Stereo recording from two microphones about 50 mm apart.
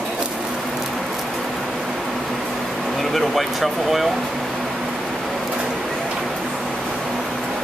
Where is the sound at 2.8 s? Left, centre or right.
Centre.